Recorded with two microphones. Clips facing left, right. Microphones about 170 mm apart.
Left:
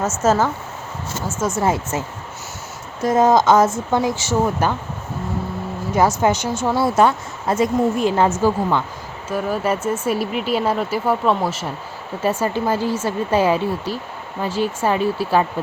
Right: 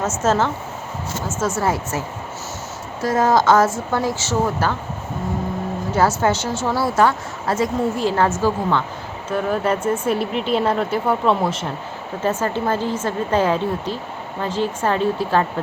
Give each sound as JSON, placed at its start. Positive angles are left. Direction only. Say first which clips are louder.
{"t": 0.0, "sound": "speech", "louder": "left 1 dB", "side_deg": 10}
{"t": 1.5, "sound": "a woman's voice", "louder": "left 1 dB", "side_deg": 20}
{"t": 3.0, "sound": "a woman's voice", "louder": "left 2 dB", "side_deg": 20}
{"t": 5.9, "sound": "a woman's voice", "louder": "left 1 dB", "side_deg": 15}